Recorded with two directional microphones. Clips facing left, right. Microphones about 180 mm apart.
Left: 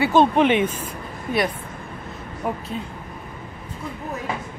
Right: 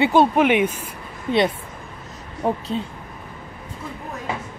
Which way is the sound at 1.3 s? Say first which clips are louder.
Right 4 dB; 25° right (ahead or behind).